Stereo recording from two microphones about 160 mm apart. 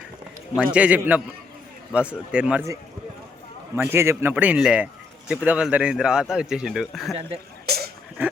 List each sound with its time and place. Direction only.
0.5 s a man's voice: 5° right (ahead or behind)
3.8 s a man's voice: 15° right (ahead or behind); by 7.2 s centre (ahead or behind)
7.7 s a sound: 85° right